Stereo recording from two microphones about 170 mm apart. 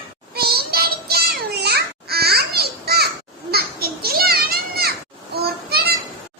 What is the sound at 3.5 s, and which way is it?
Children playing, 65° right (ahead or behind).